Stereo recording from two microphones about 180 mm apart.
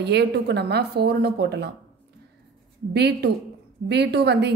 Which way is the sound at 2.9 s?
65° right (ahead or behind).